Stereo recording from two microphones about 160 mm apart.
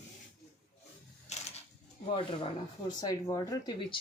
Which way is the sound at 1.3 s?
45° left (ahead or behind).